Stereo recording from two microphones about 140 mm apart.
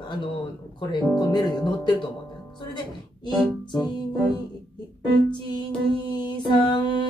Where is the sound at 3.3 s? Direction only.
30° left (ahead or behind).